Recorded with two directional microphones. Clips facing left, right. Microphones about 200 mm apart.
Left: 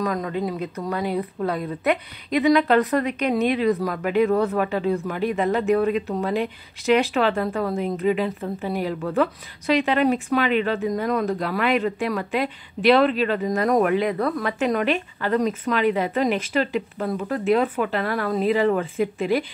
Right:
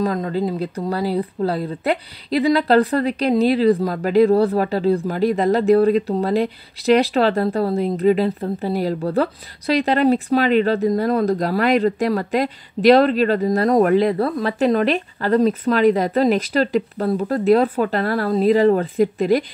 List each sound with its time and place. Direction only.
0.0 s speech: 30° right (ahead or behind)